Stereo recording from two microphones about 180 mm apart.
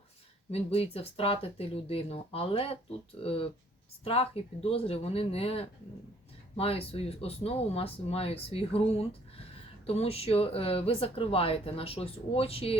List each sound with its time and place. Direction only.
0.5 s speech: 35° left (ahead or behind)